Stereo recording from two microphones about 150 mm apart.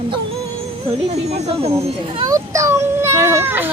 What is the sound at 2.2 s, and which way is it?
A child's voice, 20° right (ahead or behind).